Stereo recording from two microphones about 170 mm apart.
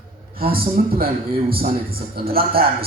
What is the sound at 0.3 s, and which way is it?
A man's voice, 60° right (ahead or behind).